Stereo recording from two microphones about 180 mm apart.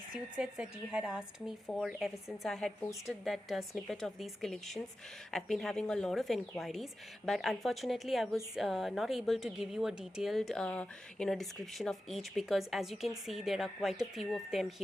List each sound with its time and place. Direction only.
0.3 s a woman's voice: 5° right (ahead or behind)